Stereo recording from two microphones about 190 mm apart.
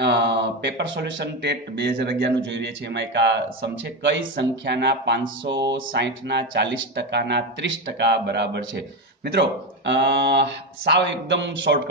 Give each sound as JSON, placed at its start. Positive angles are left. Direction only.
{"t": 0.0, "sound": "speech", "side_deg": -65}